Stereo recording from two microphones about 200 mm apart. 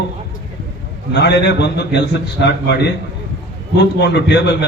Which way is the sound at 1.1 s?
60° left (ahead or behind).